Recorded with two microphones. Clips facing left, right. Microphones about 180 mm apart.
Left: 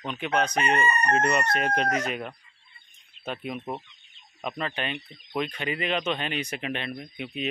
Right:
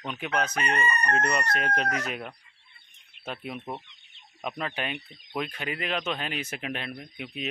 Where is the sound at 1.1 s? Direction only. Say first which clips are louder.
Left 4 dB; 5° left (ahead or behind).